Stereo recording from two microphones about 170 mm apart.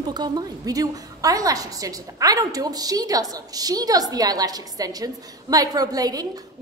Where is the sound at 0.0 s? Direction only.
25° right (ahead or behind).